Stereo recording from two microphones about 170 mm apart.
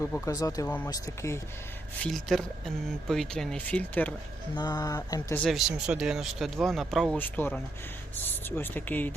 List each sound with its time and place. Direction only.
0.0 s speech: 20° left (ahead or behind)
2.0 s speech: centre (ahead or behind)
4.5 s speech: 25° left (ahead or behind)
5.4 s speech: centre (ahead or behind)